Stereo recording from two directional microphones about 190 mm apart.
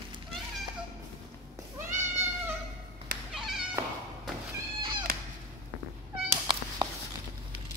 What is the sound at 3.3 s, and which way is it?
Cat, 5° right (ahead or behind).